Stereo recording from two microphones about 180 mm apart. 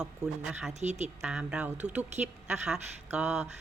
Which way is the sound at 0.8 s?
40° right (ahead or behind).